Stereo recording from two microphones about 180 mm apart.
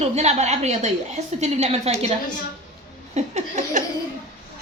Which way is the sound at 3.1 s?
40° right (ahead or behind).